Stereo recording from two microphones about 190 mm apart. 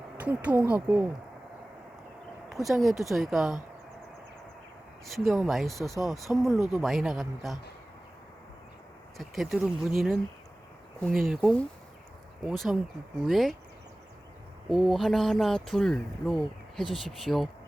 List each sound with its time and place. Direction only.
0.2 s speech: 10° right (ahead or behind)
2.5 s speech: centre (ahead or behind)
5.0 s speech: centre (ahead or behind)
9.1 s speech: centre (ahead or behind)
11.3 s speech: centre (ahead or behind)
14.7 s speech: centre (ahead or behind)